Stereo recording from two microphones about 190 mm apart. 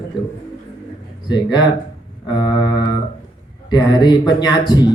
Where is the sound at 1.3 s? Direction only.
20° left (ahead or behind).